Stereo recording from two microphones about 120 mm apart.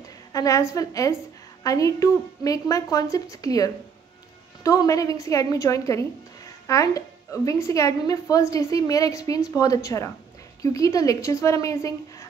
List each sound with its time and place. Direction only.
0.3 s speech: 30° left (ahead or behind)